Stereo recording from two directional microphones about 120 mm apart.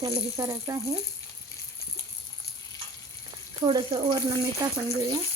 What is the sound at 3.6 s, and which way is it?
Speech, 40° right (ahead or behind).